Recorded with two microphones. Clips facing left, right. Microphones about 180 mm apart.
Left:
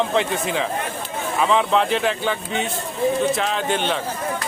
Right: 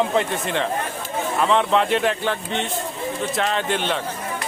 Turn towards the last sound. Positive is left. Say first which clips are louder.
# left 1 dB
turn(degrees=0)  # may be behind; listen again after turning